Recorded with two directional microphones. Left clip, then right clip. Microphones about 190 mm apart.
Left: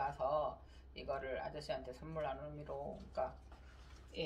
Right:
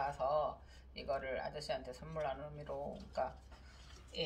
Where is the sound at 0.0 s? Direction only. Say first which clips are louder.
Right 2 dB; 30° left (ahead or behind).